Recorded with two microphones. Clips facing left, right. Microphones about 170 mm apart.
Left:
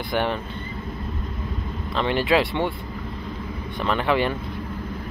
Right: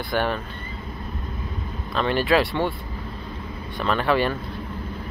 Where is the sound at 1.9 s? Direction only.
20° left (ahead or behind).